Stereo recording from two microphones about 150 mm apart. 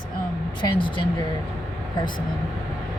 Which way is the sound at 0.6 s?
30° left (ahead or behind).